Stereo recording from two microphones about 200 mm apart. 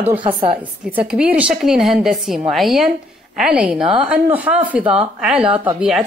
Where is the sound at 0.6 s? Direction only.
5° right (ahead or behind).